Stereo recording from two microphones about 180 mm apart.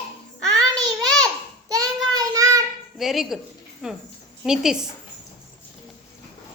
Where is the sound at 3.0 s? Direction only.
Centre (ahead or behind).